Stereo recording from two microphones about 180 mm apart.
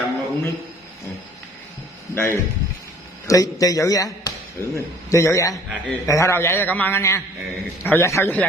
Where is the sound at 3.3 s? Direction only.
20° left (ahead or behind).